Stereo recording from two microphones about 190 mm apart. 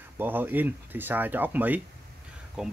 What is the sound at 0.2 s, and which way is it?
Speech, 10° right (ahead or behind).